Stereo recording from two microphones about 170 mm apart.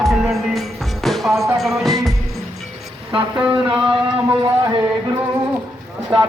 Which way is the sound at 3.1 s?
30° right (ahead or behind).